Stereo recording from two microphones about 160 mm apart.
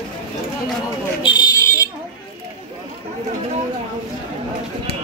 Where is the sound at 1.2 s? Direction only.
25° left (ahead or behind).